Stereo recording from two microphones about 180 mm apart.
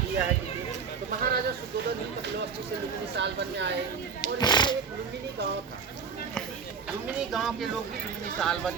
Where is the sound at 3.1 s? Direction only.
70° right (ahead or behind).